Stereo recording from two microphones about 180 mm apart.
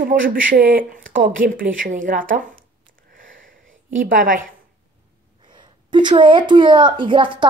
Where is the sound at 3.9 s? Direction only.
45° right (ahead or behind).